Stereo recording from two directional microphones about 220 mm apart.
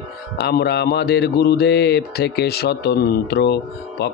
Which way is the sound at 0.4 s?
45° left (ahead or behind).